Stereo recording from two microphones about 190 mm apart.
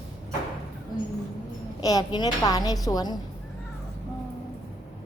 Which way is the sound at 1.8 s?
20° left (ahead or behind).